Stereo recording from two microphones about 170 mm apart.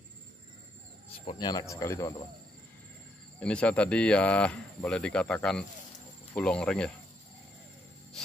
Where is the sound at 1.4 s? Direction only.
20° left (ahead or behind).